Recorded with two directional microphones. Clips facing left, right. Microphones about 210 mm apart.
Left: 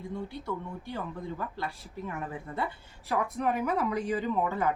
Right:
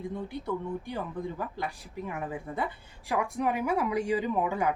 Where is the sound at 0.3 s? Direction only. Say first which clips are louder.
Right 4 dB; 15° right (ahead or behind).